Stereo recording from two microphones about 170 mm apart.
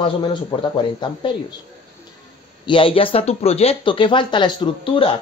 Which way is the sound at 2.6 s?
30° left (ahead or behind).